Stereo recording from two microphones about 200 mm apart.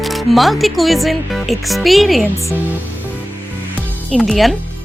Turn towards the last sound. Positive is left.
turn(degrees=0)  # may be behind; listen again after turning